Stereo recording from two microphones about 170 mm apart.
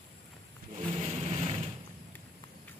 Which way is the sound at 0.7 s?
40° right (ahead or behind).